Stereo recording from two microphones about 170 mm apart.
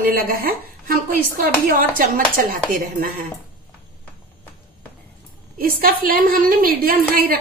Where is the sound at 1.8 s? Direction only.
55° right (ahead or behind).